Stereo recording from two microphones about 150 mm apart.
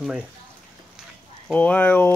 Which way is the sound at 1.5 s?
10° left (ahead or behind).